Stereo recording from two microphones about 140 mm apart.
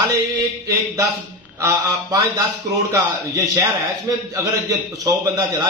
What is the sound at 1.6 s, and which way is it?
A man's voice, 20° right (ahead or behind).